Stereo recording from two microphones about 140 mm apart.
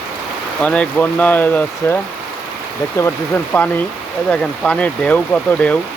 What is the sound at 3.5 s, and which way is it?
Speech, 10° left (ahead or behind).